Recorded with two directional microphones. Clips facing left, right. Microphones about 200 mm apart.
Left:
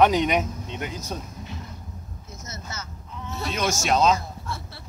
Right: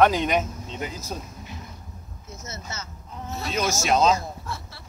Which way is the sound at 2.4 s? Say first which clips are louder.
Right 1 dB; 25° right (ahead or behind).